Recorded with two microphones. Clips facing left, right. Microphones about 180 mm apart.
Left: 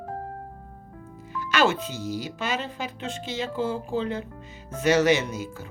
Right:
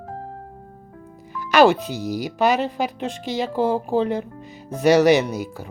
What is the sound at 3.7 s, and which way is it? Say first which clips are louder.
Speech: right 7 dB; 60° right (ahead or behind).